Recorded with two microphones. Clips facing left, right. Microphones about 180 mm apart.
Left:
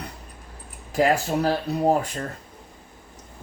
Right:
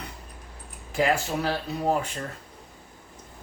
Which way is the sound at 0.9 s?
40° left (ahead or behind).